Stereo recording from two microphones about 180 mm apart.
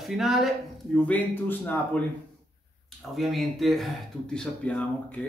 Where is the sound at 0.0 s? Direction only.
Centre (ahead or behind).